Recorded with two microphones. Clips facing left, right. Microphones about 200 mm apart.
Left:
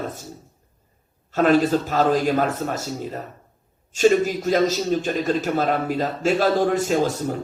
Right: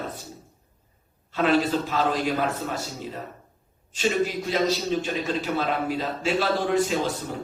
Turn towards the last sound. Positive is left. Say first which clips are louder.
# left 6 dB
turn(degrees=45)  # may be behind; listen again after turning